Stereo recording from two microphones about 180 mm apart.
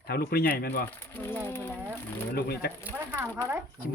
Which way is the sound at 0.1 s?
55° left (ahead or behind).